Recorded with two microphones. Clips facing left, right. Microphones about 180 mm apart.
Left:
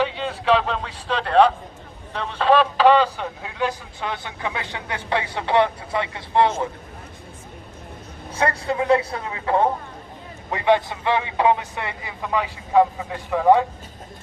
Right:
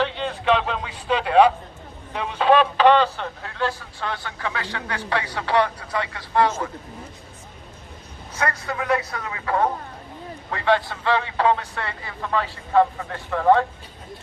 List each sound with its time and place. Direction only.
0.0 s a sound: 5° left (ahead or behind)
2.1 s speech: 5° right (ahead or behind); by 6.7 s 25° left (ahead or behind)
8.4 s speech: 30° left (ahead or behind); by 13.7 s 10° left (ahead or behind)